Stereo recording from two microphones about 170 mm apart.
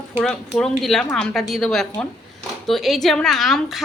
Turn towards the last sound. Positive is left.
turn(degrees=0)  # may be behind; listen again after turning